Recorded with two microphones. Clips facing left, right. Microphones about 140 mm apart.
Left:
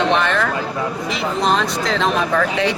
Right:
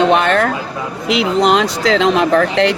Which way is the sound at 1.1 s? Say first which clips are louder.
Right 8 dB; 90° right.